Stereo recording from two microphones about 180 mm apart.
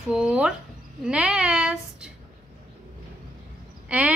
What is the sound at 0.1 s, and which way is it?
Speech, 5° right (ahead or behind).